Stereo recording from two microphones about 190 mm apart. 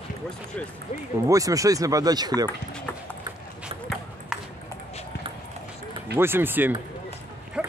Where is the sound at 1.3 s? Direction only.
15° right (ahead or behind).